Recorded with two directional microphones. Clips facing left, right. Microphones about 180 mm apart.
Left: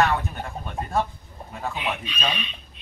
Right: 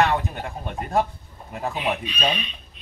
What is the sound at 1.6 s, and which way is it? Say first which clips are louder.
Chicken: right 3 dB; 40° right (ahead or behind).